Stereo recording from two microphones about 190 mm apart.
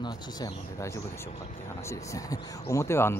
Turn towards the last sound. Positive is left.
turn(degrees=15)  # may be behind; listen again after turning